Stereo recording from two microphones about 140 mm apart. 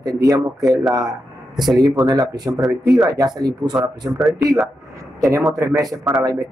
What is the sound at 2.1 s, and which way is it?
Speech, 30° right (ahead or behind).